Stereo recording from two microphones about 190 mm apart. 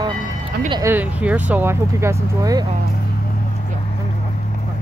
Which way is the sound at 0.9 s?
10° right (ahead or behind).